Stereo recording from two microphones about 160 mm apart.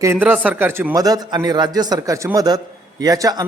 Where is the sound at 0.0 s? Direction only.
15° right (ahead or behind).